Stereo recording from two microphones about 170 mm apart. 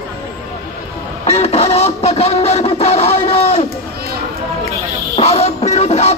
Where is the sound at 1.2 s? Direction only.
35° left (ahead or behind).